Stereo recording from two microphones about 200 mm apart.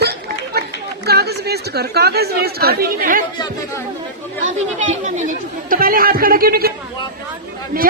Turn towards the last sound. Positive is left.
turn(degrees=-50)  # may be behind; listen again after turning